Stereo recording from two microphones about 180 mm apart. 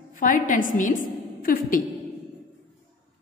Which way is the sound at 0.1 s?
45° left (ahead or behind).